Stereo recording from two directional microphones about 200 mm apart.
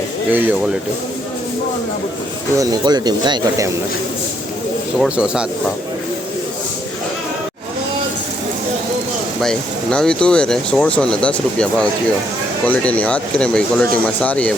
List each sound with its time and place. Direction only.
0.3 s speech: 10° right (ahead or behind)
2.6 s speech: 20° right (ahead or behind)
4.9 s speech: 5° right (ahead or behind)
9.4 s speech: 5° left (ahead or behind)